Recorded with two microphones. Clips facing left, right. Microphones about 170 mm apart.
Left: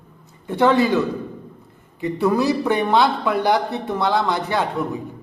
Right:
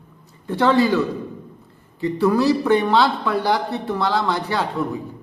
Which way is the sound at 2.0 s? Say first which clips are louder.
Right 1 dB; 15° left (ahead or behind).